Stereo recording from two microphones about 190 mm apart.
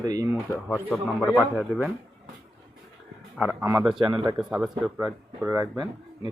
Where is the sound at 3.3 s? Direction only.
10° right (ahead or behind); by 4.3 s 25° right (ahead or behind).